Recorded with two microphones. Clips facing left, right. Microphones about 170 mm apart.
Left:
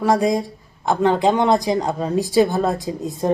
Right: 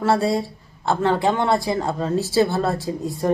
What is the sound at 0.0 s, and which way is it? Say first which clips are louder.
A woman's voice: left 2 dB; 15° left (ahead or behind).